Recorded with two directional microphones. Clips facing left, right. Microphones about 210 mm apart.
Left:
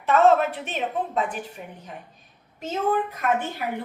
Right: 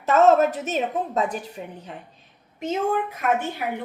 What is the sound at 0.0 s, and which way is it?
A woman's voice, 40° right (ahead or behind).